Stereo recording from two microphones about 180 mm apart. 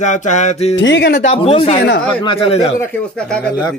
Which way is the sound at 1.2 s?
35° left (ahead or behind).